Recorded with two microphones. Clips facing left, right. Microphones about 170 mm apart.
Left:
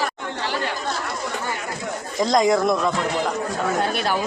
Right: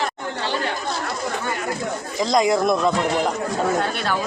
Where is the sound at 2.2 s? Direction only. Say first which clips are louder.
Left 1 dB; 10° right (ahead or behind).